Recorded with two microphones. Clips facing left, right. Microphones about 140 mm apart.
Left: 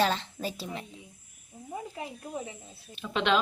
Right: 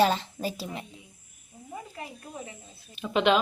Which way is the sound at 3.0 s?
5° right (ahead or behind).